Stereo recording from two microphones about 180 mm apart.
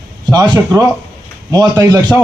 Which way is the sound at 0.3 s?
20° right (ahead or behind).